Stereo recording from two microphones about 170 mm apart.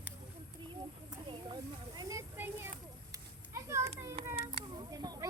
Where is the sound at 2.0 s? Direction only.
20° right (ahead or behind).